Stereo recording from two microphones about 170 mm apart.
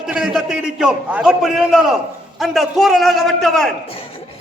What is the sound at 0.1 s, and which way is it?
A man's voice, 5° right (ahead or behind).